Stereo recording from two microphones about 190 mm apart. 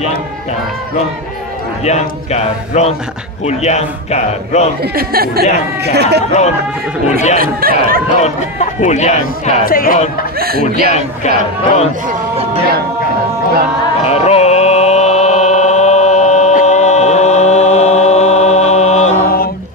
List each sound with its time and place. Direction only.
1.9 s speech: 35° left (ahead or behind)
4.8 s speech: 50° right (ahead or behind)
7.1 s speech: 35° left (ahead or behind)
7.3 s speech: 50° right (ahead or behind)
8.2 s speech: 35° left (ahead or behind)
9.7 s speech: 50° left (ahead or behind)
10.4 s speech: 50° right (ahead or behind)
10.9 s speech: 35° left (ahead or behind)
14.0 s chant: 35° left (ahead or behind); by 19.5 s 50° left (ahead or behind)